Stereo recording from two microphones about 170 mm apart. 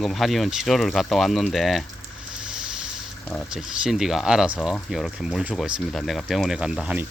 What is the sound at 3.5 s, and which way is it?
Speech, 5° right (ahead or behind).